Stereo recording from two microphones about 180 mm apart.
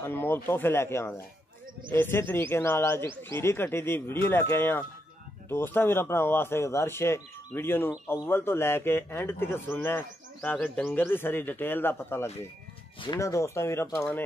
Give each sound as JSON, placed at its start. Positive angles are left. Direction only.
{"t": 0.0, "sound": "a man's voice", "side_deg": 10}